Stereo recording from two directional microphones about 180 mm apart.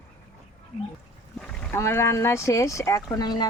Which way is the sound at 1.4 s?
5° left (ahead or behind).